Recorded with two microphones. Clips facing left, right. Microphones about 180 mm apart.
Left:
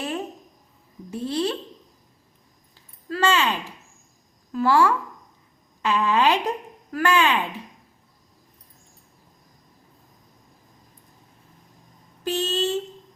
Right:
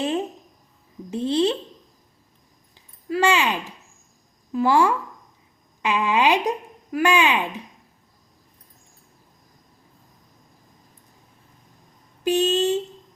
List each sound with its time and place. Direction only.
1.1 s speech: 20° right (ahead or behind)
3.1 s speech: 15° right (ahead or behind)
12.2 s speech: 15° right (ahead or behind)